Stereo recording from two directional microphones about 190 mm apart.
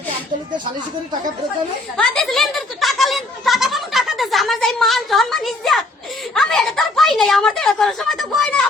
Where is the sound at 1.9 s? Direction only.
Centre (ahead or behind).